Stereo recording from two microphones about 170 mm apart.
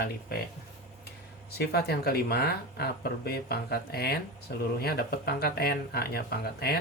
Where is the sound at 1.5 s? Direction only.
70° left (ahead or behind).